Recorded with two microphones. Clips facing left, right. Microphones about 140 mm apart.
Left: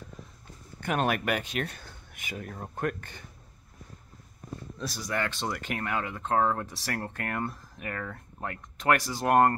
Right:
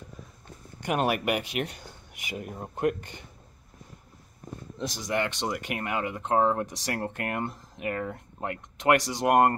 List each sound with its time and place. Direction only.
0.7 s speech: 15° right (ahead or behind)
4.7 s speech: 20° right (ahead or behind)